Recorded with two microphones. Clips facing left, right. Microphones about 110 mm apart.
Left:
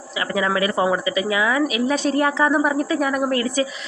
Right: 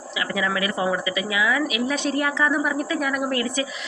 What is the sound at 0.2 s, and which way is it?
Speech, 35° left (ahead or behind).